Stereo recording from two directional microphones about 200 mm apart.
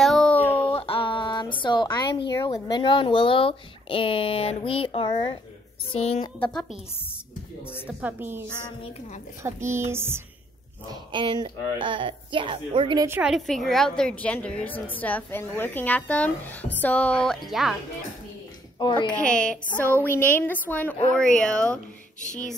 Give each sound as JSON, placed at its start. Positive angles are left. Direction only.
{"t": 0.0, "sound": "a sound", "side_deg": 5}
{"t": 0.7, "sound": "a sound", "side_deg": 25}
{"t": 2.3, "sound": "speech", "side_deg": 20}
{"t": 7.8, "sound": "a woman's voice", "side_deg": -10}
{"t": 9.7, "sound": "a woman's voice", "side_deg": -10}
{"t": 10.9, "sound": "speech", "side_deg": -25}
{"t": 13.2, "sound": "a woman's voice", "side_deg": 0}
{"t": 18.8, "sound": "a woman's voice", "side_deg": 25}
{"t": 19.0, "sound": "a woman's voice", "side_deg": 5}
{"t": 22.2, "sound": "speech", "side_deg": 40}